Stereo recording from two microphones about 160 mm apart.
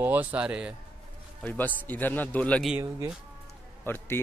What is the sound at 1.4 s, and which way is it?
Speech, 10° left (ahead or behind).